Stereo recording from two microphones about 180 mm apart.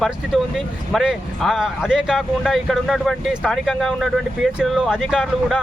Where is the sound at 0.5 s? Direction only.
Centre (ahead or behind).